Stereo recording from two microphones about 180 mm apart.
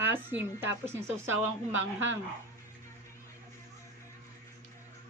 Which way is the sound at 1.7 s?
90° right.